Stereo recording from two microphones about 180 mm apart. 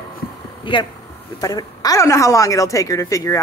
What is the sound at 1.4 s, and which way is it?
A woman's voice, 20° left (ahead or behind).